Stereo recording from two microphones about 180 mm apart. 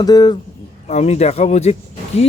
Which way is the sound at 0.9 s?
35° left (ahead or behind).